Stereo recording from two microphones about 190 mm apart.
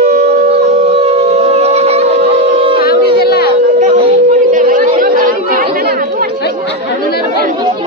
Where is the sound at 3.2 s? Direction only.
55° left (ahead or behind).